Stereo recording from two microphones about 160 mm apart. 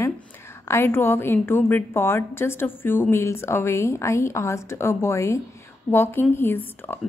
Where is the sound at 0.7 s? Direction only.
15° left (ahead or behind).